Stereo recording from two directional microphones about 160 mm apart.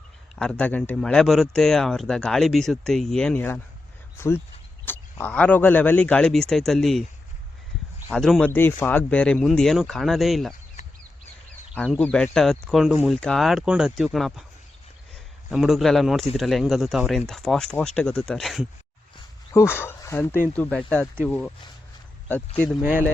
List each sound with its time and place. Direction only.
0.3 s speech: 5° left (ahead or behind)
8.1 s speech: 5° left (ahead or behind)
11.9 s speech: 10° left (ahead or behind)
15.4 s speech: centre (ahead or behind)
19.5 s speech: 15° left (ahead or behind)
22.5 s speech: 10° left (ahead or behind)
22.8 s speech: 10° right (ahead or behind)